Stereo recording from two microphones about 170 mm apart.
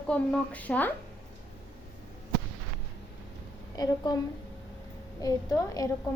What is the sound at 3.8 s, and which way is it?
Speech, 25° left (ahead or behind).